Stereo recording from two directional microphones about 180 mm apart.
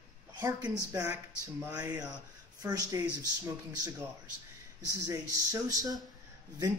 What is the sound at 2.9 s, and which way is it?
Speech, 20° right (ahead or behind).